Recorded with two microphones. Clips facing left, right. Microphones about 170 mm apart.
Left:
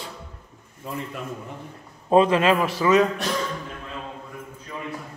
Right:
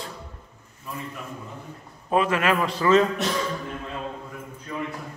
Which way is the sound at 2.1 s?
25° left (ahead or behind).